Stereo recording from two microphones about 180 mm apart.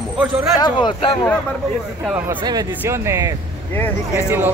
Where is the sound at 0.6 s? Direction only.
25° left (ahead or behind).